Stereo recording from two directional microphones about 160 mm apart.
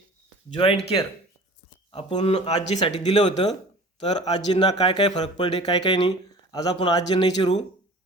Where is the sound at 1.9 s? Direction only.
35° left (ahead or behind).